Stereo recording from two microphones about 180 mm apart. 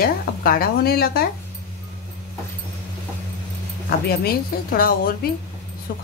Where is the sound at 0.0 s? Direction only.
55° left (ahead or behind).